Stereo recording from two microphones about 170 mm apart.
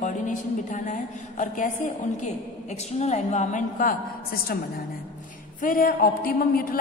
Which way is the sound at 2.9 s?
40° left (ahead or behind).